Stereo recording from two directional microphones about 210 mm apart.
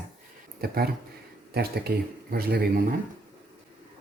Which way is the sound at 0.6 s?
50° right (ahead or behind).